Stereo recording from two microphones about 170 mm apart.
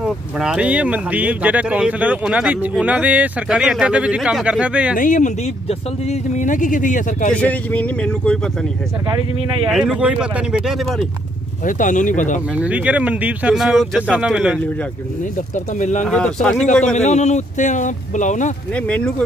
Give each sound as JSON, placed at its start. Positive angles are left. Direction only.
{"t": 0.0, "sound": "speech", "side_deg": -5}
{"t": 4.9, "sound": "speech", "side_deg": 50}
{"t": 7.3, "sound": "speech", "side_deg": 10}
{"t": 9.7, "sound": "speech", "side_deg": -5}
{"t": 11.6, "sound": "speech", "side_deg": 50}
{"t": 12.5, "sound": "speech", "side_deg": -10}
{"t": 15.5, "sound": "speech", "side_deg": 45}
{"t": 16.1, "sound": "speech", "side_deg": 5}
{"t": 16.9, "sound": "speech", "side_deg": 45}
{"t": 18.8, "sound": "speech", "side_deg": 5}